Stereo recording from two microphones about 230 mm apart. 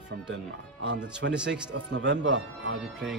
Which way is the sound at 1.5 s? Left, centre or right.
Right.